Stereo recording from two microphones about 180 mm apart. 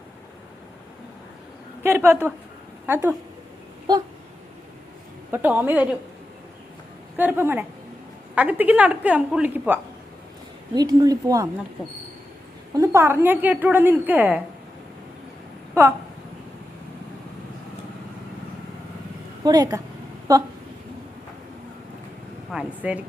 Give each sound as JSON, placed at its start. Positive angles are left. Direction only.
{"t": 1.8, "sound": "a woman's voice", "side_deg": -10}
{"t": 3.9, "sound": "speech", "side_deg": -20}
{"t": 5.3, "sound": "a woman's voice", "side_deg": -10}
{"t": 7.2, "sound": "a woman's voice", "side_deg": -10}
{"t": 10.8, "sound": "speech", "side_deg": -20}
{"t": 12.7, "sound": "a woman's voice", "side_deg": -20}
{"t": 19.5, "sound": "speech", "side_deg": -20}
{"t": 22.5, "sound": "a woman's voice", "side_deg": -10}